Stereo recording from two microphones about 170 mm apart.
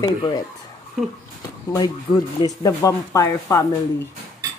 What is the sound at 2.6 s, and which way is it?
Speech, 20° left (ahead or behind).